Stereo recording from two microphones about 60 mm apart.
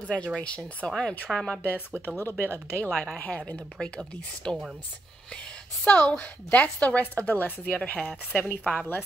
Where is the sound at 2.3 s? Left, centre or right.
Left.